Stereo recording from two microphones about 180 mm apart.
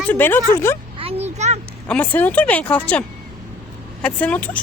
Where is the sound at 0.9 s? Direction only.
35° right (ahead or behind).